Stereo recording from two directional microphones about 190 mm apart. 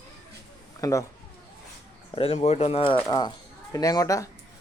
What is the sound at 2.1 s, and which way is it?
Speech, 30° left (ahead or behind).